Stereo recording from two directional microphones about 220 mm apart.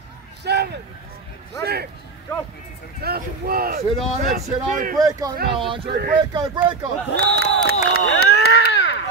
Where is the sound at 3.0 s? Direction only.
45° right (ahead or behind).